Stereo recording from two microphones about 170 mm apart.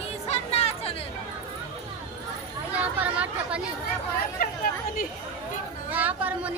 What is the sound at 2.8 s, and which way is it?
Chatter, 10° right (ahead or behind).